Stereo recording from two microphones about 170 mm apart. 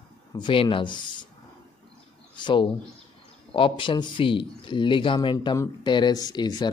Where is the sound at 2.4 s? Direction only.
30° left (ahead or behind).